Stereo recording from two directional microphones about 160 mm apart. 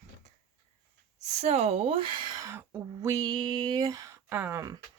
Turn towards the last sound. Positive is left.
turn(degrees=-20)  # may be behind; listen again after turning